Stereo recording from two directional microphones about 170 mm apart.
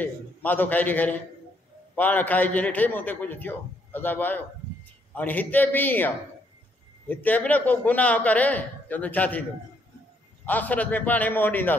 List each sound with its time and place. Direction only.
0.0 s a man's voice: 10° left (ahead or behind)
10.4 s a man's voice: 10° left (ahead or behind)